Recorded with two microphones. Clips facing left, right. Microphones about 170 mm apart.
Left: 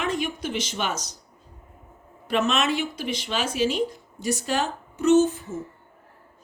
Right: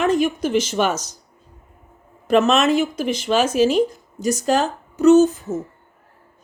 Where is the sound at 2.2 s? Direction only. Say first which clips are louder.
Right 8 dB; 45° right (ahead or behind).